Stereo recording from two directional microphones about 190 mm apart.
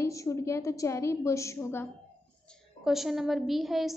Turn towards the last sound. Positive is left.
turn(degrees=0)  # may be behind; listen again after turning